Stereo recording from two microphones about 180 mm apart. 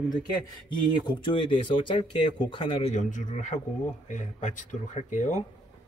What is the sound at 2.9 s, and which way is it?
Speech, 45° left (ahead or behind).